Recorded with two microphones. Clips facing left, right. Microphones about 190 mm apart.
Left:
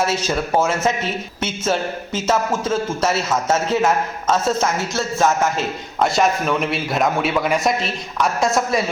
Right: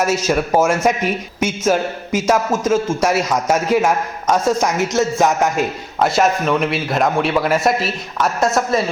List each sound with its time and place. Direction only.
0.0 s a man's voice: 10° right (ahead or behind)
6.0 s a man's voice: centre (ahead or behind)